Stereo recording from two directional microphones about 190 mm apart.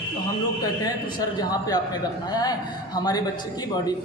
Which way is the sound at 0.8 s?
20° left (ahead or behind).